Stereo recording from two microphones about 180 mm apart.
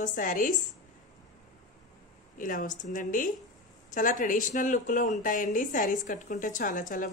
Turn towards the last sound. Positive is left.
turn(degrees=50)  # may be behind; listen again after turning